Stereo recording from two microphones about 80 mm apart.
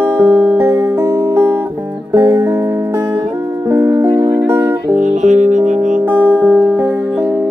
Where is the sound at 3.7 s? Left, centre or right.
Right.